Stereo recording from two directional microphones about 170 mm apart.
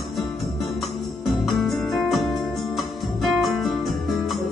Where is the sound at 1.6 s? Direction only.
Centre (ahead or behind).